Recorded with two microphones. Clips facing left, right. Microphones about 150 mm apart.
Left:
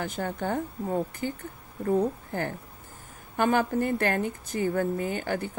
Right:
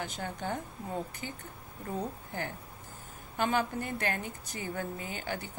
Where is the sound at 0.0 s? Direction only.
50° left (ahead or behind).